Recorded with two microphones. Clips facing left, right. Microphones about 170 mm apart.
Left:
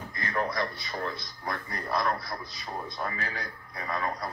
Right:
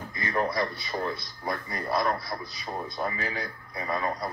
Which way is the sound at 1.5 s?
5° right (ahead or behind).